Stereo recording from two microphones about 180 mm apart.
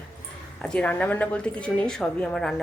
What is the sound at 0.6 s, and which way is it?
A woman's voice, 5° left (ahead or behind).